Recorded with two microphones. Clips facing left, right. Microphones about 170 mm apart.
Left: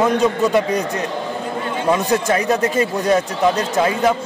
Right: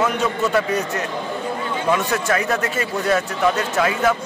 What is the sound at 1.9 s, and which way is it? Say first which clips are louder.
Speech: left 4 dB; 20° left (ahead or behind).